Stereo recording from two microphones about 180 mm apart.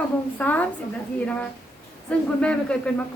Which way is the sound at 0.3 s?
10° left (ahead or behind).